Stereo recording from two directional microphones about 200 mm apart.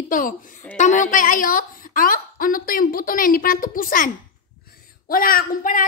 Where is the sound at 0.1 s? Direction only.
45° left (ahead or behind).